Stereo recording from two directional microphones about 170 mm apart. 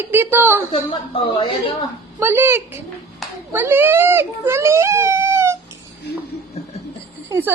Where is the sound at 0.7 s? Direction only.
30° left (ahead or behind).